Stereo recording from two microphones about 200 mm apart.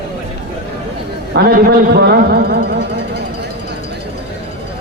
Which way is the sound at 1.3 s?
50° right (ahead or behind).